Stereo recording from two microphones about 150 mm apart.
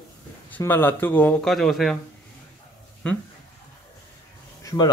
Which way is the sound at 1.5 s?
Centre (ahead or behind).